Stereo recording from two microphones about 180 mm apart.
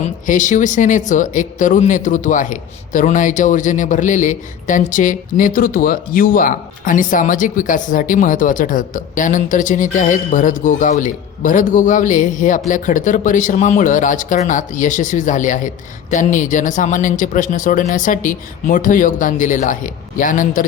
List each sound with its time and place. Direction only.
0.0 s speech: 45° left (ahead or behind)